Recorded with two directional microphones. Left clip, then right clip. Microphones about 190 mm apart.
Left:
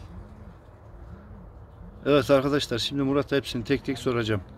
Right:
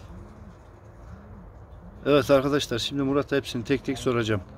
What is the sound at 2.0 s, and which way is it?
Speech, centre (ahead or behind).